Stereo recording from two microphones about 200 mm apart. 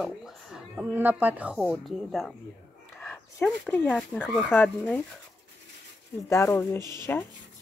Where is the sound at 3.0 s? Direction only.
10° left (ahead or behind).